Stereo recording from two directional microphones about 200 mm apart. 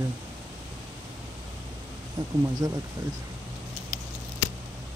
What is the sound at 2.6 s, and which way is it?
Speech, 15° right (ahead or behind).